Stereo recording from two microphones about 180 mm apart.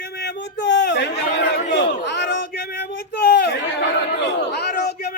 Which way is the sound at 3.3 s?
75° left (ahead or behind).